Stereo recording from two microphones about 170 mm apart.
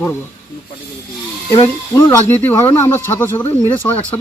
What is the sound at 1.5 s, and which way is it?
Speech, 20° left (ahead or behind).